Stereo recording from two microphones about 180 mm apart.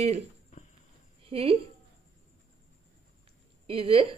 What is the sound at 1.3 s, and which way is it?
Speech, 30° right (ahead or behind).